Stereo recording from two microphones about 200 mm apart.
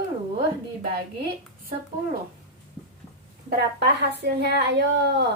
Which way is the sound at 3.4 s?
55° right (ahead or behind).